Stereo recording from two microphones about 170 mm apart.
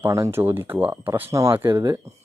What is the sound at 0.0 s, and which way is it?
Speech, 15° right (ahead or behind).